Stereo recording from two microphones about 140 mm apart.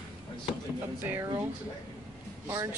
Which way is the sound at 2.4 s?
20° right (ahead or behind).